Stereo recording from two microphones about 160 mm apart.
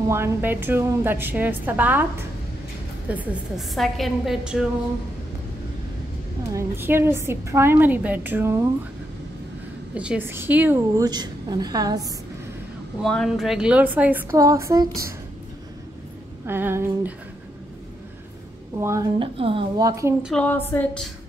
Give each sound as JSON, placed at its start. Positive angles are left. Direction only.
{"t": 0.1, "sound": "a woman's voice", "side_deg": -15}
{"t": 3.1, "sound": "a woman's voice", "side_deg": -5}
{"t": 6.5, "sound": "a woman's voice", "side_deg": -15}
{"t": 9.9, "sound": "a woman's voice", "side_deg": -10}
{"t": 11.0, "sound": "a woman's voice", "side_deg": -25}
{"t": 13.0, "sound": "a woman's voice", "side_deg": 0}
{"t": 16.4, "sound": "a woman's voice", "side_deg": -15}
{"t": 18.8, "sound": "a woman's voice", "side_deg": -15}
{"t": 19.1, "sound": "speech", "side_deg": -35}
{"t": 19.8, "sound": "a woman's voice", "side_deg": -20}
{"t": 20.3, "sound": "a sound", "side_deg": 10}